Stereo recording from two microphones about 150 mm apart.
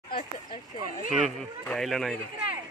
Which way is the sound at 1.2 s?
Centre (ahead or behind).